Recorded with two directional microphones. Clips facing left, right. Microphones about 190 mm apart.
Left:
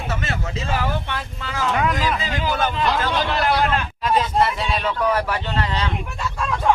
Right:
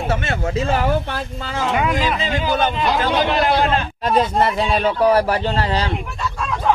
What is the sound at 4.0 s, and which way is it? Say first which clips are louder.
Speech: right 2 dB; 40° right (ahead or behind).